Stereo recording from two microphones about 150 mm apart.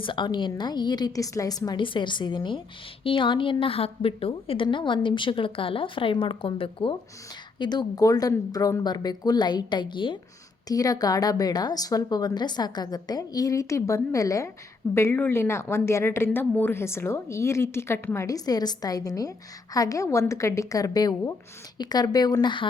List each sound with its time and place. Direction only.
0.0 s a woman's voice: 35° left (ahead or behind)